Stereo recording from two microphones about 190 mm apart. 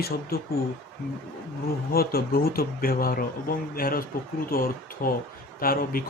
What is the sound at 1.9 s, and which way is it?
Speech, 50° left (ahead or behind).